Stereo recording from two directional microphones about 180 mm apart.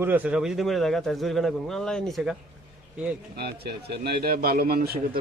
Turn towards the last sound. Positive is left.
turn(degrees=-55)  # may be behind; listen again after turning